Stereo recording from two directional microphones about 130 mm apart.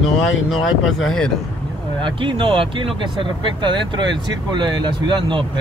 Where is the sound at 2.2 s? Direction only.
40° right (ahead or behind).